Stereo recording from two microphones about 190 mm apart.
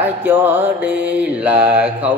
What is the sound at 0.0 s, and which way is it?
Mantra, 10° right (ahead or behind).